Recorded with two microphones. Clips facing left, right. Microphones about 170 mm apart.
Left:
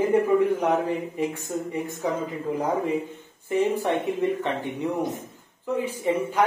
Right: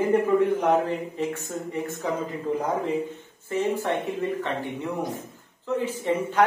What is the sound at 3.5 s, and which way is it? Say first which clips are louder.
Speech: left 2 dB; 15° left (ahead or behind).